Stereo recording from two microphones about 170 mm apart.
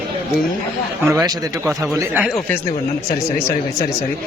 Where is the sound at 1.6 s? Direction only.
15° right (ahead or behind).